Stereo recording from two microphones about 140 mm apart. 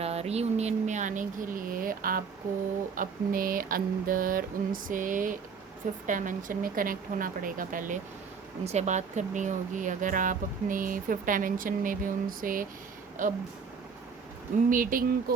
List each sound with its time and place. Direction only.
0.0 s speech: 50° right (ahead or behind); by 2.2 s 90° right
2.9 s mantra: 80° right
6.1 s speech: 70° right (ahead or behind)
8.6 s speech: 55° right (ahead or behind); by 12.6 s 80° right
13.2 s speech: 70° right (ahead or behind)
14.7 s speech: 80° right